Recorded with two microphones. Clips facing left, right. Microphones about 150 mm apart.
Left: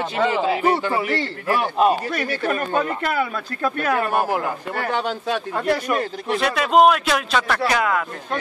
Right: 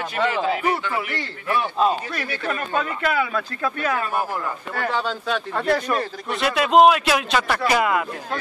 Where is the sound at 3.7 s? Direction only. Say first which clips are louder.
Left 4 dB; 50° left (ahead or behind); by 4.5 s 70° left (ahead or behind).